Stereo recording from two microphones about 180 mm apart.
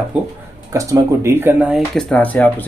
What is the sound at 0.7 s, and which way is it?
Speech, 15° right (ahead or behind).